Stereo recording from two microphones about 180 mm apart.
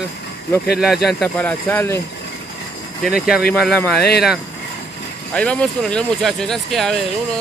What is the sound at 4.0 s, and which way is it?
Speech, 65° left (ahead or behind).